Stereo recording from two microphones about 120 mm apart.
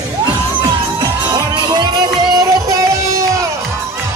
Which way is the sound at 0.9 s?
35° right (ahead or behind).